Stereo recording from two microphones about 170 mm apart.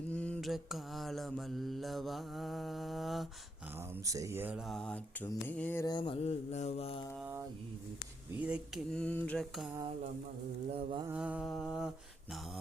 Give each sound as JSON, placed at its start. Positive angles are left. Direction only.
{"t": 0.1, "sound": "mantra", "side_deg": 10}
{"t": 3.8, "sound": "mantra", "side_deg": -15}
{"t": 5.8, "sound": "mantra", "side_deg": 25}
{"t": 8.4, "sound": "mantra", "side_deg": -5}
{"t": 11.1, "sound": "mantra", "side_deg": -5}